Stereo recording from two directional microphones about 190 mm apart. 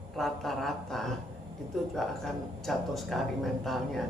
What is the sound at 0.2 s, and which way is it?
Speech, centre (ahead or behind).